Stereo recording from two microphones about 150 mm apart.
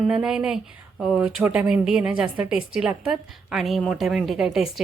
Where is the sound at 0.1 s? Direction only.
5° right (ahead or behind).